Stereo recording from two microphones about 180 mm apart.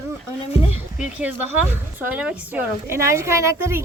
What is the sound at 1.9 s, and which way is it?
A woman's voice, 10° right (ahead or behind).